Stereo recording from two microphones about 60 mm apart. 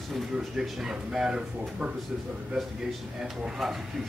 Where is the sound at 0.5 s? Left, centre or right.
Centre.